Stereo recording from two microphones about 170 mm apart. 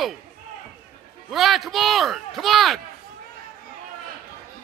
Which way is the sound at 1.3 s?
Centre (ahead or behind).